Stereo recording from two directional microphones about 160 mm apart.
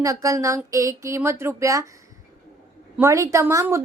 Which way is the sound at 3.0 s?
20° right (ahead or behind).